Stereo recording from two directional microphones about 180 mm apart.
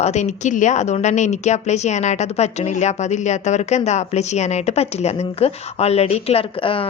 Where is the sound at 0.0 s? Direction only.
40° left (ahead or behind).